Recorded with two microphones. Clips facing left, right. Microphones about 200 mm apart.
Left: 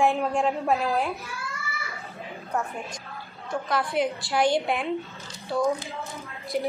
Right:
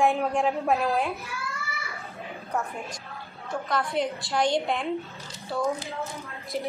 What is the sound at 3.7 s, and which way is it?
A woman's voice, centre (ahead or behind).